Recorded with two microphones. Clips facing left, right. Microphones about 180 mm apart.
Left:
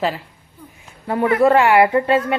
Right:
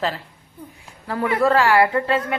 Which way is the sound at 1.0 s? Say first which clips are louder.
Left 4 dB; 20° left (ahead or behind).